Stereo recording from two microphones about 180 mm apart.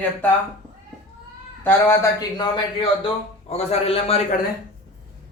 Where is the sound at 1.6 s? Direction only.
15° left (ahead or behind).